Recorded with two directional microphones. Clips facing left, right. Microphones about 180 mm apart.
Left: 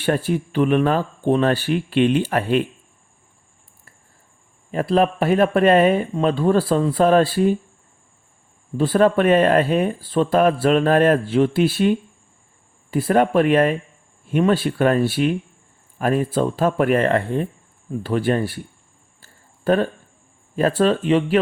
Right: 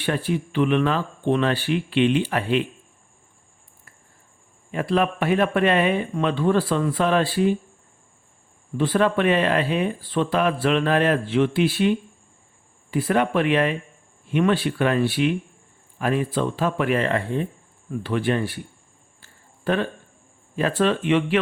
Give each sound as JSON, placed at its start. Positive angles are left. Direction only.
{"t": 0.0, "sound": "speech", "side_deg": 40}
{"t": 4.7, "sound": "speech", "side_deg": 40}
{"t": 8.8, "sound": "speech", "side_deg": 40}
{"t": 18.0, "sound": "speech", "side_deg": 40}
{"t": 19.2, "sound": "a sound", "side_deg": 40}
{"t": 20.6, "sound": "speech", "side_deg": 40}